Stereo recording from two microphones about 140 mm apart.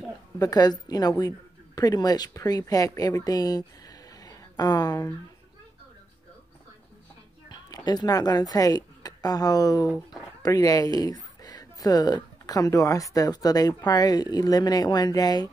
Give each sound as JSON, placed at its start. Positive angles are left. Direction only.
{"t": 0.4, "sound": "speech", "side_deg": 30}
{"t": 7.4, "sound": "a woman's voice", "side_deg": 30}